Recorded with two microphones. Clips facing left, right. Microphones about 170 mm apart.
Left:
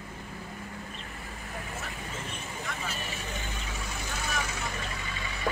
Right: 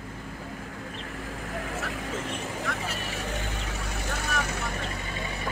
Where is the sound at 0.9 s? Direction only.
75° right (ahead or behind); by 5.4 s 45° right (ahead or behind).